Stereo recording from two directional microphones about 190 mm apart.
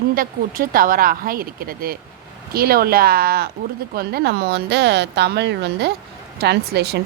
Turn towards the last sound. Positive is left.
turn(degrees=-60)  # may be behind; listen again after turning